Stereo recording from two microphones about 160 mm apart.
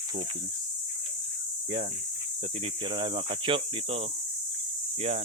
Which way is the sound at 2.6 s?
30° right (ahead or behind).